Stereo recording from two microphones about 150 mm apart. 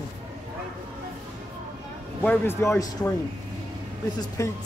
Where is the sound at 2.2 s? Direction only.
15° left (ahead or behind).